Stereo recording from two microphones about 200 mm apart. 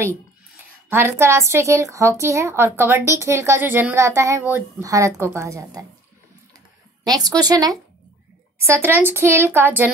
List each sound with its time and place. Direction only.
0.8 s a woman's voice: 10° right (ahead or behind)
7.2 s a woman's voice: 20° right (ahead or behind)